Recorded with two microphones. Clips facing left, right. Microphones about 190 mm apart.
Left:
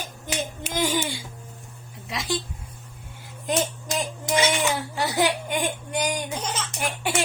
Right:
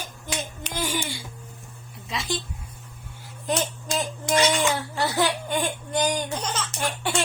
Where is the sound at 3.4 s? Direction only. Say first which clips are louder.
Left 1 dB; 20° left (ahead or behind).